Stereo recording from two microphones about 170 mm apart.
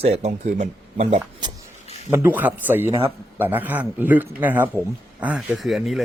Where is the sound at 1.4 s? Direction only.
25° right (ahead or behind).